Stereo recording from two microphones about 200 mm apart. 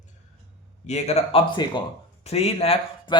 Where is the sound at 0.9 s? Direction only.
35° left (ahead or behind).